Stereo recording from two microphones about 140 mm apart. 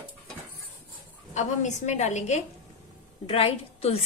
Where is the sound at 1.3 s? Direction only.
55° left (ahead or behind).